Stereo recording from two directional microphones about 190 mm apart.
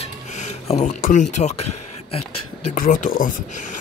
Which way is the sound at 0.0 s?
35° left (ahead or behind).